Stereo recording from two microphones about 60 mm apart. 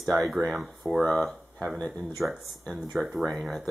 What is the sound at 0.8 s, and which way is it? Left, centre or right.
Speech, right.